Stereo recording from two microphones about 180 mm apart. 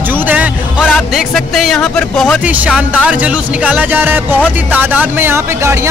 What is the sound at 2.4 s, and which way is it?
Speech, 10° right (ahead or behind).